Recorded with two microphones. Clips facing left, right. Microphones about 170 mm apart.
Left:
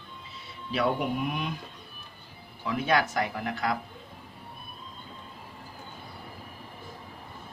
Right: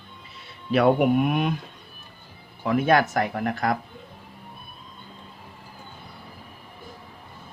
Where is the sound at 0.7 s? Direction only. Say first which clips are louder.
Right 9 dB; 60° right (ahead or behind).